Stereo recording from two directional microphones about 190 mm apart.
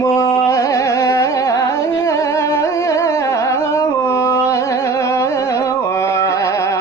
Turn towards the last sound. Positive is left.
turn(degrees=15)  # may be behind; listen again after turning